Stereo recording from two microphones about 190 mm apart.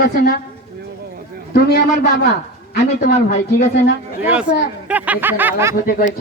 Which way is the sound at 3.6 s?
60° left (ahead or behind).